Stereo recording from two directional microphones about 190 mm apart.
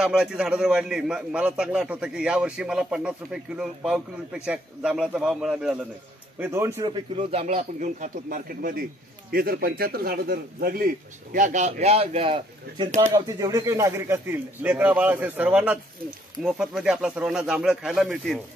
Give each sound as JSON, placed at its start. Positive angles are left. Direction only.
{"t": 0.0, "sound": "a man's voice", "side_deg": -5}
{"t": 6.4, "sound": "a man's voice", "side_deg": -15}
{"t": 6.9, "sound": "speech", "side_deg": -30}
{"t": 11.3, "sound": "a man's voice", "side_deg": -40}